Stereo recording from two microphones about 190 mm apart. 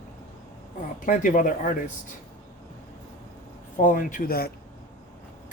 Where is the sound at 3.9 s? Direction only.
45° left (ahead or behind).